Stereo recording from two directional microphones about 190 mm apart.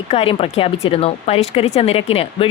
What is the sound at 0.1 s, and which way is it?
A woman's voice, 30° left (ahead or behind).